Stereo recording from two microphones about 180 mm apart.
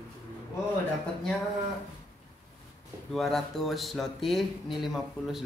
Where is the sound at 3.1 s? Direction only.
Centre (ahead or behind).